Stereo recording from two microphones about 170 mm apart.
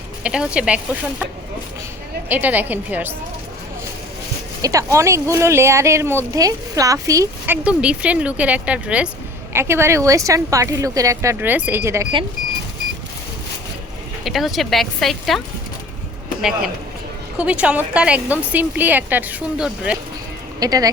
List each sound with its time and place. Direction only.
0.2 s speech: 5° right (ahead or behind)
2.3 s speech: 10° right (ahead or behind)
4.6 s speech: 20° right (ahead or behind)
14.3 s speech: centre (ahead or behind)
17.3 s speech: 5° right (ahead or behind)
20.6 s speech: 20° right (ahead or behind)